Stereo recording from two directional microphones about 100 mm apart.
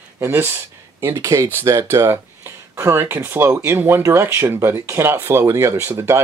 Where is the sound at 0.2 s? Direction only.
25° right (ahead or behind).